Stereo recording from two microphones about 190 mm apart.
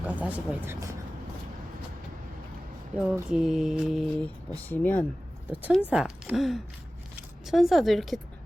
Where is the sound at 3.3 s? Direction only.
Centre (ahead or behind).